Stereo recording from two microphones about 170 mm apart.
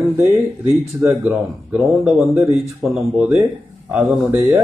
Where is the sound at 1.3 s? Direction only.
5° right (ahead or behind).